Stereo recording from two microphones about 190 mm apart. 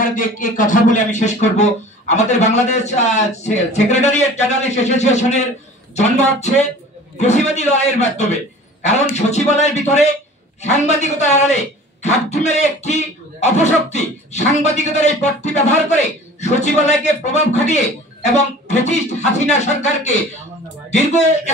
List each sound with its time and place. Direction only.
0.0 s a man's voice: 45° left (ahead or behind)